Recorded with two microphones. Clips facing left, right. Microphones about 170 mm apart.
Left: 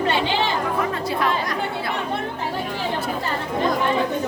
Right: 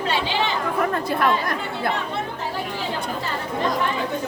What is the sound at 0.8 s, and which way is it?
Speech, 50° right (ahead or behind).